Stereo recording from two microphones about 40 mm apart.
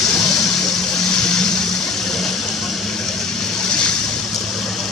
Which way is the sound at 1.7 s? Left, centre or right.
Centre.